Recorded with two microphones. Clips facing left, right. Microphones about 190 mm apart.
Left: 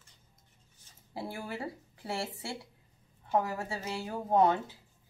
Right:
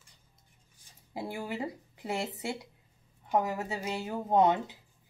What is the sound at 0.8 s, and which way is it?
Speech, 15° right (ahead or behind).